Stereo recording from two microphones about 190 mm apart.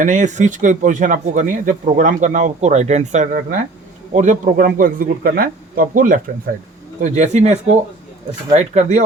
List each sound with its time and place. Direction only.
0.0 s a man's voice: 40° right (ahead or behind)